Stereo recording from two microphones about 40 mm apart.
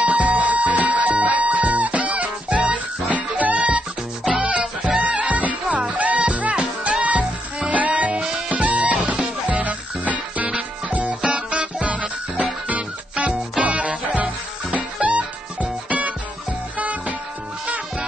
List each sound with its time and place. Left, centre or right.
0.0 s music: right
3.5 s music: right
4.9 s music: right
13.2 s music: right